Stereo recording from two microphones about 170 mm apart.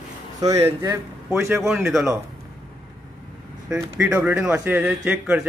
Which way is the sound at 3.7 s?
5° right (ahead or behind).